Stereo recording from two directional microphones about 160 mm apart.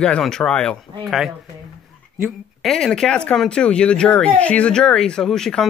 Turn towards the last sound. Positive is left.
turn(degrees=5)  # may be behind; listen again after turning